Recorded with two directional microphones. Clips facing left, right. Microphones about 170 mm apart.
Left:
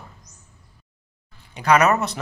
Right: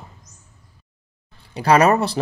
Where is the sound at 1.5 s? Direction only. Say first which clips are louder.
Right 3 dB; 30° right (ahead or behind).